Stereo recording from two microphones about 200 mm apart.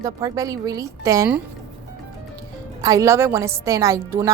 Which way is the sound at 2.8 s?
15° right (ahead or behind).